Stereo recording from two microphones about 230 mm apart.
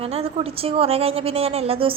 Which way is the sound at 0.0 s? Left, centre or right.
Right.